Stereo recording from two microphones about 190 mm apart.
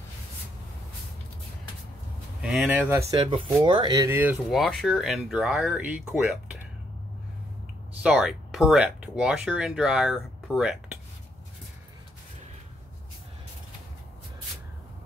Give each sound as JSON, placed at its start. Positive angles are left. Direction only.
{"t": 2.4, "sound": "speech", "side_deg": -5}
{"t": 4.2, "sound": "speech", "side_deg": -5}
{"t": 8.0, "sound": "speech", "side_deg": -5}